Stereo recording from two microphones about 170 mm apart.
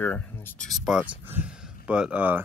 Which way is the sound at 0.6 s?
Centre (ahead or behind).